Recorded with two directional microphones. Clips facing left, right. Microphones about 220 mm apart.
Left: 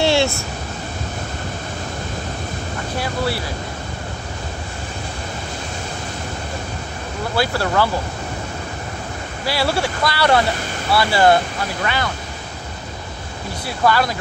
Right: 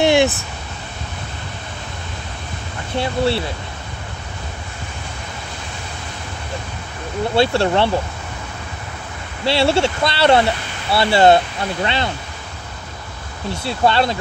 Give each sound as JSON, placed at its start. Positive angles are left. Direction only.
{"t": 0.0, "sound": "a sound", "side_deg": -20}
{"t": 3.0, "sound": "speech", "side_deg": -25}
{"t": 7.3, "sound": "speech", "side_deg": -25}
{"t": 9.4, "sound": "speech", "side_deg": -25}
{"t": 13.7, "sound": "speech", "side_deg": -25}